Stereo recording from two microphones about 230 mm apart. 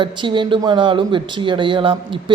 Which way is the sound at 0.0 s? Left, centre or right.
Right.